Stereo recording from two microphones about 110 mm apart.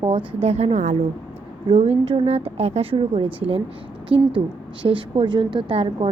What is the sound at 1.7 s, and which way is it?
A woman's voice, 65° right (ahead or behind).